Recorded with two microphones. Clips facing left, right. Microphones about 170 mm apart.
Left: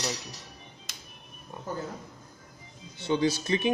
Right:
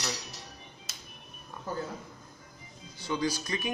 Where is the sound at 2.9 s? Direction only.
25° left (ahead or behind).